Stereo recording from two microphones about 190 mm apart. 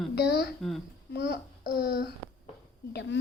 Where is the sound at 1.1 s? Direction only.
60° left (ahead or behind).